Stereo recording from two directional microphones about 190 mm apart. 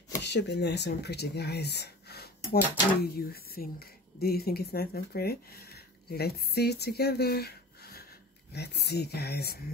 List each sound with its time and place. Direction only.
0.2 s speech: 65° left (ahead or behind)